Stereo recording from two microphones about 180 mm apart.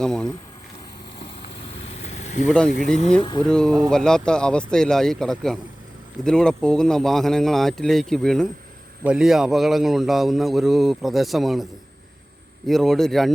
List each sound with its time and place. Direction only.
0.0 s a man's voice: 5° left (ahead or behind)
1.9 s vehicle: 35° left (ahead or behind)
3.4 s a man's voice: 5° left (ahead or behind)